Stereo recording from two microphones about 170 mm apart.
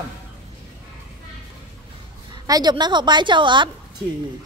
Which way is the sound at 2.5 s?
25° right (ahead or behind).